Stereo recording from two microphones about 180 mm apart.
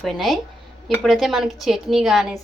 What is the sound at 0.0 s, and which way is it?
Speech, centre (ahead or behind).